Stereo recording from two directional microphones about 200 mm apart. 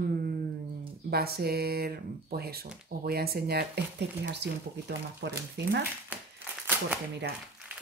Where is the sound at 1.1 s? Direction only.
50° right (ahead or behind).